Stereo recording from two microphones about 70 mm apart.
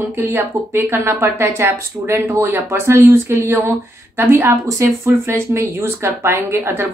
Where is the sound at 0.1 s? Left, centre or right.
Right.